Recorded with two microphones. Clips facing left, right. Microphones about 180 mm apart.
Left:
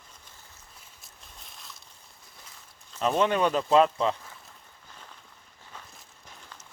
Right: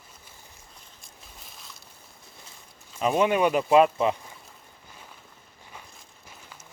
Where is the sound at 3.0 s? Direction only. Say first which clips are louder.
Right 2 dB; 10° right (ahead or behind).